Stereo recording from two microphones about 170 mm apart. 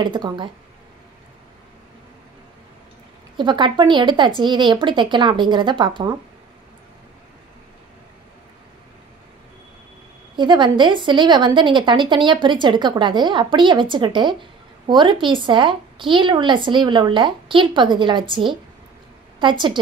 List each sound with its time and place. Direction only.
0.0 s speech: 25° right (ahead or behind)
3.3 s speech: 30° right (ahead or behind)
10.3 s speech: 25° right (ahead or behind)